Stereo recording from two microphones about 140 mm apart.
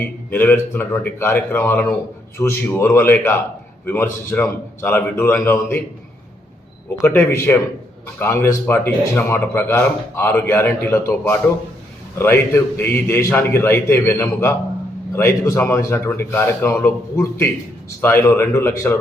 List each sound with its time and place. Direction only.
0.3 s speech: 15° left (ahead or behind)
6.9 s speech: 15° left (ahead or behind)